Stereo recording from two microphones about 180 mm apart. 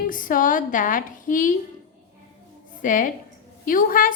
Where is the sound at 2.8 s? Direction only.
50° left (ahead or behind).